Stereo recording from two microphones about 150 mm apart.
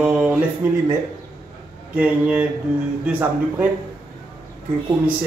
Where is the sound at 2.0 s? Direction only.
10° right (ahead or behind).